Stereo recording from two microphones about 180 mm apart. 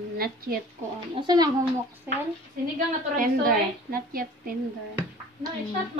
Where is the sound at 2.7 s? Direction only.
50° right (ahead or behind).